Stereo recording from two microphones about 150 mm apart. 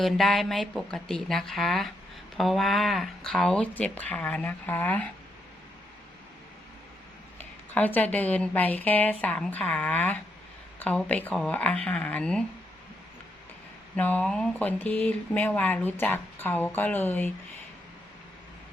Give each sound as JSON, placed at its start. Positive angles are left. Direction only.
{"t": 0.0, "sound": "a woman's voice", "side_deg": 0}
{"t": 7.3, "sound": "speech", "side_deg": 10}
{"t": 13.9, "sound": "speech", "side_deg": 10}